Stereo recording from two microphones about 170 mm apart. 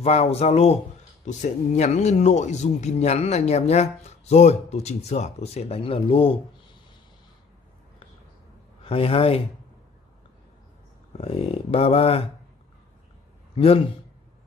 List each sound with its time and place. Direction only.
0.0 s speech: 40° left (ahead or behind)
8.8 s speech: 35° left (ahead or behind)
11.1 s speech: 35° left (ahead or behind)
13.6 s speech: 35° left (ahead or behind)